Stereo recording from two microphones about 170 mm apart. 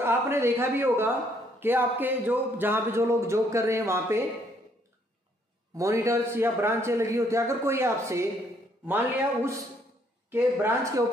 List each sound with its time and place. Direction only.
0.0 s speech: 15° right (ahead or behind)
5.8 s speech: 20° right (ahead or behind)